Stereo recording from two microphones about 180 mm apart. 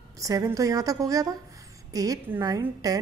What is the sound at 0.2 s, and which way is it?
A woman's voice, 20° right (ahead or behind).